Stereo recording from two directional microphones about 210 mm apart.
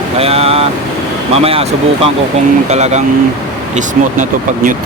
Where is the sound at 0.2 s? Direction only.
30° right (ahead or behind).